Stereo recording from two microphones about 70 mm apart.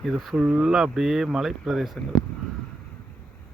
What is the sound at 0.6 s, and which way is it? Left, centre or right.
Speech, centre.